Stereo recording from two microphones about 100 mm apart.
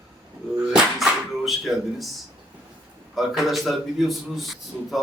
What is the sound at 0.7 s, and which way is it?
A man's voice, centre (ahead or behind).